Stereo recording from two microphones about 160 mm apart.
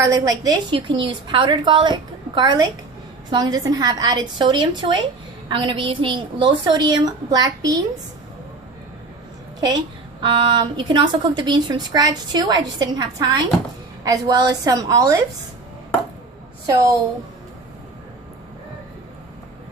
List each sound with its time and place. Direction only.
0.0 s a woman's voice: 20° right (ahead or behind)
10.2 s a woman's voice: 30° right (ahead or behind)
16.6 s a woman's voice: 20° right (ahead or behind)